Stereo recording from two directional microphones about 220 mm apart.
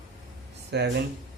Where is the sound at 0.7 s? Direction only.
50° right (ahead or behind).